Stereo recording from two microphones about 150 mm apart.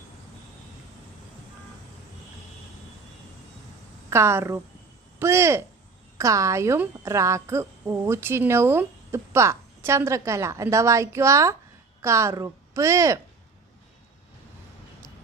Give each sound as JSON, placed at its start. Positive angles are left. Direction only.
{"t": 4.1, "sound": "a woman's voice", "side_deg": -15}